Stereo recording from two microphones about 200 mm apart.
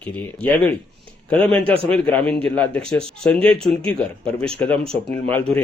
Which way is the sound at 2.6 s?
5° left (ahead or behind).